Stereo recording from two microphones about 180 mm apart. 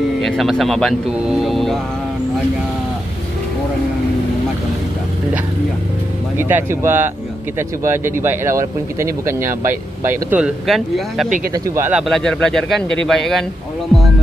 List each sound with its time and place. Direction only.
0.2 s speech: centre (ahead or behind)
6.3 s speech: 10° right (ahead or behind)
11.5 s speech: 15° right (ahead or behind)
12.0 s speech: 5° left (ahead or behind)